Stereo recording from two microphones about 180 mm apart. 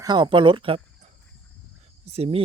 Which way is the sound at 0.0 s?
25° right (ahead or behind).